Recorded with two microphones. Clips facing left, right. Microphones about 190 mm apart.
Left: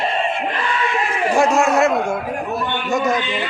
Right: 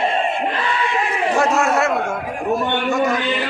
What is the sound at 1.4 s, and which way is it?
Speech, 15° left (ahead or behind).